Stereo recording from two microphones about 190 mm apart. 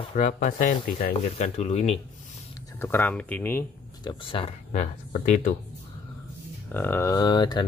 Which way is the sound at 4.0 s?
25° left (ahead or behind).